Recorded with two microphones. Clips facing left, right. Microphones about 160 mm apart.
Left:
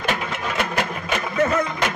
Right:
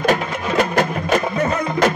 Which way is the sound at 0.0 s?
40° right (ahead or behind).